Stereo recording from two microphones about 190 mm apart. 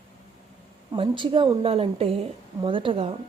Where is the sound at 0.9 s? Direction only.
25° right (ahead or behind).